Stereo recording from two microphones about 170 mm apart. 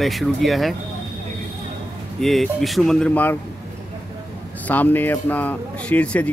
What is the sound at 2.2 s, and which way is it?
Speech, centre (ahead or behind).